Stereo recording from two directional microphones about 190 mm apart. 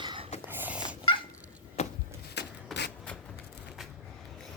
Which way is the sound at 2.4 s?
65° left (ahead or behind).